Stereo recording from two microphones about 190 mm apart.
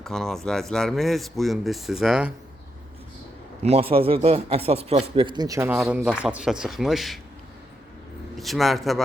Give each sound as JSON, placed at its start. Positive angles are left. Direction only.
{"t": 0.0, "sound": "speech", "side_deg": 0}
{"t": 3.6, "sound": "a man's voice", "side_deg": -30}
{"t": 8.4, "sound": "speech", "side_deg": 0}